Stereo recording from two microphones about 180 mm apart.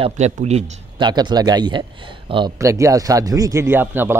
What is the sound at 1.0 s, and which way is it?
A man's voice, 25° right (ahead or behind).